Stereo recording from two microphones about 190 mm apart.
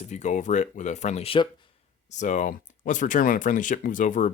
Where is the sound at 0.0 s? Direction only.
40° left (ahead or behind).